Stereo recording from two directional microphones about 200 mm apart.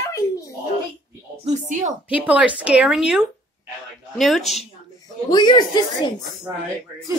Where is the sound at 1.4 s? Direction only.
40° right (ahead or behind).